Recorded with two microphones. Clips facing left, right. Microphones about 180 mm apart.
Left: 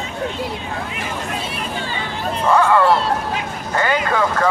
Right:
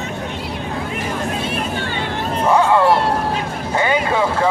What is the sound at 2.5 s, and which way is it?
Hubbub, 20° right (ahead or behind).